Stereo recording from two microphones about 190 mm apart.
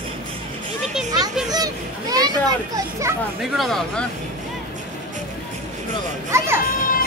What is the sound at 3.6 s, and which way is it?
Speech, centre (ahead or behind).